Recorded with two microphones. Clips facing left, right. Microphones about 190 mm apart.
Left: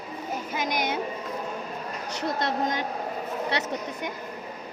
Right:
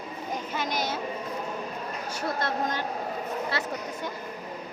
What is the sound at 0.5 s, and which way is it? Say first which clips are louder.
Speech: left 3 dB; 15° left (ahead or behind).